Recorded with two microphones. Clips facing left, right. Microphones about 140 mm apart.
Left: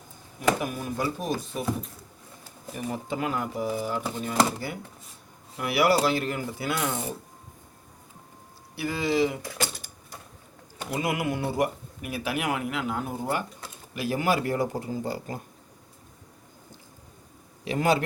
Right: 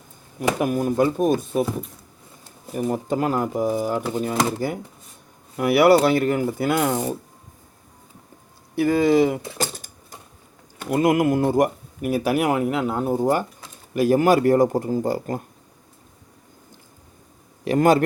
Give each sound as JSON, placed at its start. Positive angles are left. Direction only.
{"t": 0.6, "sound": "speech", "side_deg": -50}
{"t": 2.7, "sound": "speech", "side_deg": -45}
{"t": 5.5, "sound": "speech", "side_deg": -55}
{"t": 8.7, "sound": "speech", "side_deg": -50}
{"t": 9.6, "sound": "typewriter", "side_deg": -45}
{"t": 10.9, "sound": "speech", "side_deg": -45}
{"t": 17.7, "sound": "speech", "side_deg": -45}